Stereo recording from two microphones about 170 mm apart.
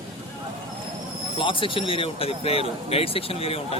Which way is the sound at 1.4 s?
30° left (ahead or behind).